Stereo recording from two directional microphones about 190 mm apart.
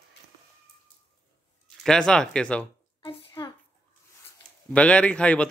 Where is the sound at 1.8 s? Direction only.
5° left (ahead or behind).